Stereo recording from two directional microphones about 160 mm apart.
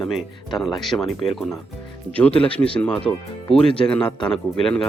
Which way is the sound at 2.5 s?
5° left (ahead or behind).